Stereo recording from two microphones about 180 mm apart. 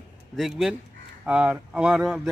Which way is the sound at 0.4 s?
Centre (ahead or behind).